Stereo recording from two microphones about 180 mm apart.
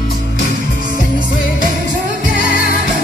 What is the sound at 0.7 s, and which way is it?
Music, 50° right (ahead or behind).